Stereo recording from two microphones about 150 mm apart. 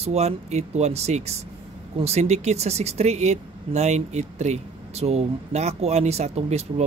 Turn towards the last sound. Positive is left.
turn(degrees=-45)  # may be behind; listen again after turning